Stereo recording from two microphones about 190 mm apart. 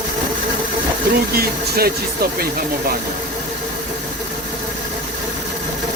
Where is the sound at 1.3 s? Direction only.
50° right (ahead or behind).